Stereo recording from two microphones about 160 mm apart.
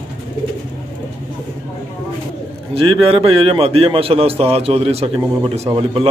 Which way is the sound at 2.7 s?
35° right (ahead or behind).